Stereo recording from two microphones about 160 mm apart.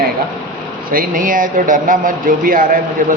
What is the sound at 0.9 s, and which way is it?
Speech, 60° right (ahead or behind).